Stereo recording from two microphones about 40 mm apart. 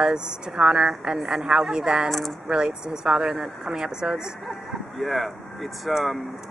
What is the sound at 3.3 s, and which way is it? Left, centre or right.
Speech, centre.